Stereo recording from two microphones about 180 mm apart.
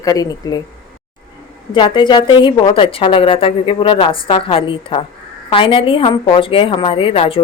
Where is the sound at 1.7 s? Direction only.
25° left (ahead or behind).